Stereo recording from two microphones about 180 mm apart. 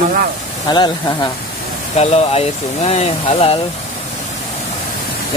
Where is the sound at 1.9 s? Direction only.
35° left (ahead or behind).